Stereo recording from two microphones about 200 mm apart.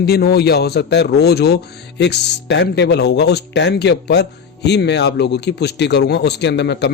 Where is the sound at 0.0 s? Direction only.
55° left (ahead or behind).